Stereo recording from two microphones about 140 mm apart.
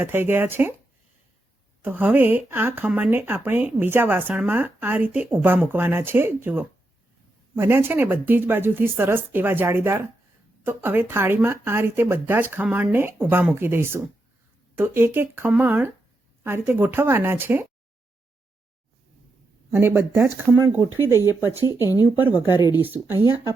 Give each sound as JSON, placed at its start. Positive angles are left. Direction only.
{"t": 0.0, "sound": "speech", "side_deg": -15}
{"t": 1.8, "sound": "speech", "side_deg": -15}
{"t": 20.0, "sound": "speech", "side_deg": -15}